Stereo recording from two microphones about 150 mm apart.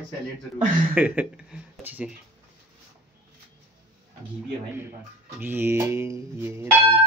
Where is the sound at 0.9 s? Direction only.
5° right (ahead or behind).